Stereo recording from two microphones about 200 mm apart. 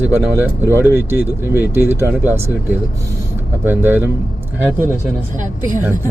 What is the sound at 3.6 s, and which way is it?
Speech, 10° right (ahead or behind).